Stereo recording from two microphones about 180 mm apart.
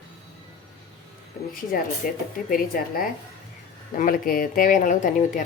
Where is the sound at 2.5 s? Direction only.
50° left (ahead or behind).